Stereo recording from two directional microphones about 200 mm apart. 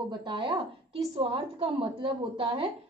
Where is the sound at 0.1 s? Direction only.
20° right (ahead or behind).